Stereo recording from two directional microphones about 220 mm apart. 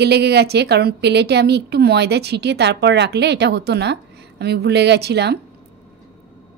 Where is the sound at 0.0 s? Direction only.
50° right (ahead or behind).